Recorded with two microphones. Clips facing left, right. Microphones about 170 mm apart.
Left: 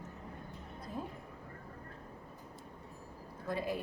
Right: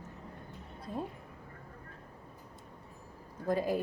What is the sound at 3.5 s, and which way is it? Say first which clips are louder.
Speech: right 6 dB; 40° right (ahead or behind).